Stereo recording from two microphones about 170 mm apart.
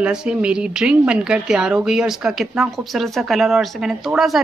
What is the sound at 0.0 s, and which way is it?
Speech, 5° right (ahead or behind).